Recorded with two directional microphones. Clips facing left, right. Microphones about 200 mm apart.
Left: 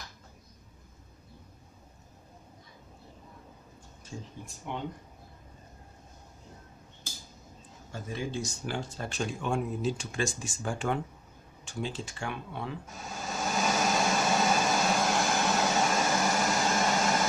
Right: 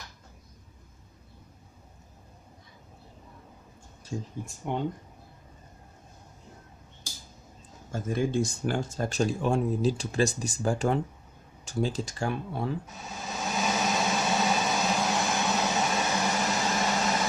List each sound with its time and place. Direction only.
4.1 s speech: 40° right (ahead or behind)
7.9 s speech: 50° right (ahead or behind)
12.8 s a sound: centre (ahead or behind)